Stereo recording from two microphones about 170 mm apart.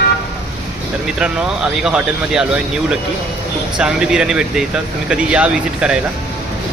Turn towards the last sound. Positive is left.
turn(degrees=-5)  # may be behind; listen again after turning